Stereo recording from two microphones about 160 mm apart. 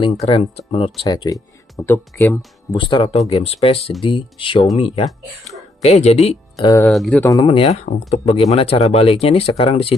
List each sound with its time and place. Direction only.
0.0 s speech: 35° left (ahead or behind)
1.0 s speech: 25° left (ahead or behind)
2.7 s speech: 30° left (ahead or behind)
6.9 s speech: centre (ahead or behind)
7.2 s speech: 20° left (ahead or behind)
7.4 s speech: 35° left (ahead or behind)